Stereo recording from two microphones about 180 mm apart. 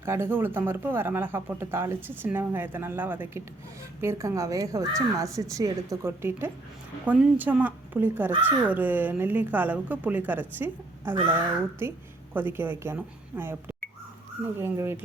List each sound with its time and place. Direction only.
0.0 s a woman's voice: 15° right (ahead or behind)